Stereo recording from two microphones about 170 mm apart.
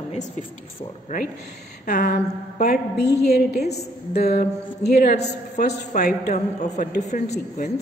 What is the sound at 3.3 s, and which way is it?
Speech, 70° left (ahead or behind).